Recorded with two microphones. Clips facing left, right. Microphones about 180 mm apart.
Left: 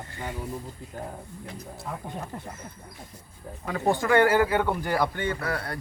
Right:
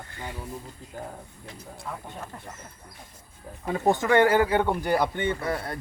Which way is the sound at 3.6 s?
20° right (ahead or behind).